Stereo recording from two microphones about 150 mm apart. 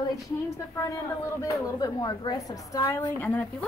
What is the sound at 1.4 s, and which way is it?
A woman's voice, 25° left (ahead or behind).